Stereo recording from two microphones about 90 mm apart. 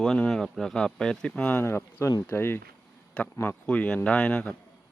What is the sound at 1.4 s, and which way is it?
Speech, 20° left (ahead or behind).